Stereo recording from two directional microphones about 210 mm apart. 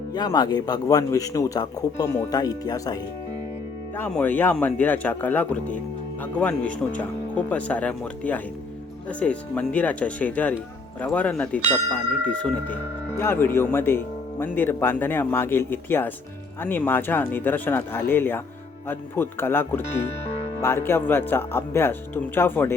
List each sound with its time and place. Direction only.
0.1 s speech: 20° left (ahead or behind)